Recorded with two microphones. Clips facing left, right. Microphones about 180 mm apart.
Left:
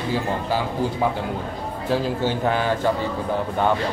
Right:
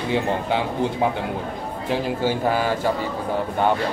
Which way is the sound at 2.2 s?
10° right (ahead or behind).